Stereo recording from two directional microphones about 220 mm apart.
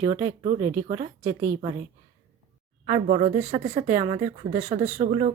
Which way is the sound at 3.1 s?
35° right (ahead or behind).